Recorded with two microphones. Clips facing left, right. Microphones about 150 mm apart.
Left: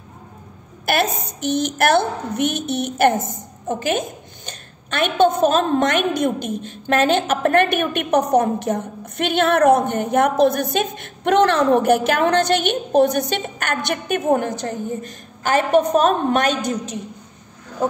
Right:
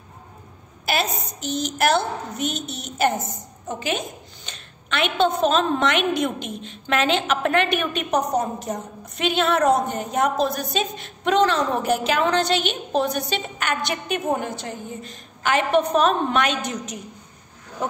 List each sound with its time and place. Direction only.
0.8 s a woman's voice: 55° left (ahead or behind); by 17.0 s 35° left (ahead or behind)